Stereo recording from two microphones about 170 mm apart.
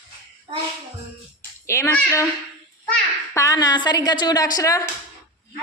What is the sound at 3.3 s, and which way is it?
A woman's voice, 20° left (ahead or behind).